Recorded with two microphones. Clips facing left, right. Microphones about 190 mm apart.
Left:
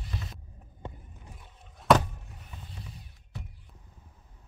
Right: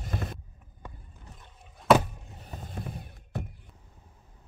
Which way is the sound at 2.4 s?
45° right (ahead or behind).